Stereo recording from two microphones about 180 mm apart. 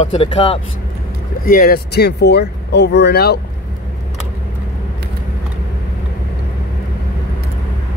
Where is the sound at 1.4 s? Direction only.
55° left (ahead or behind).